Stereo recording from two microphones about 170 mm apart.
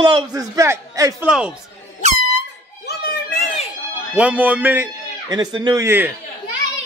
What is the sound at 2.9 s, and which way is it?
Children playing, 70° left (ahead or behind).